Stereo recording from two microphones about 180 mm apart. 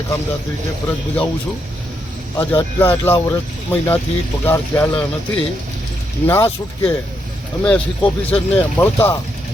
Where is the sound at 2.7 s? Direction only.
10° left (ahead or behind).